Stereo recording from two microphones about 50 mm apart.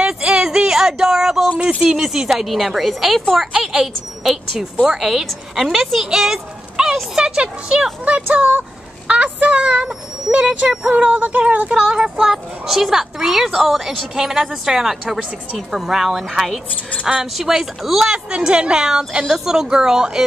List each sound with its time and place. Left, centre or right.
0.0 s a sound: centre
1.6 s speech: right
1.9 s a woman's voice: centre
8.0 s speech: right
10.7 s a woman's voice: centre
11.0 s speech: right
11.7 s a woman's voice: centre
17.0 s a woman's voice: centre